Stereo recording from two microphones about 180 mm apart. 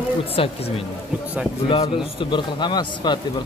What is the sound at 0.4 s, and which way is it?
Speech, 30° left (ahead or behind).